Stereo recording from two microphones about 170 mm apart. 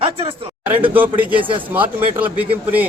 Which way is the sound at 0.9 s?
10° right (ahead or behind).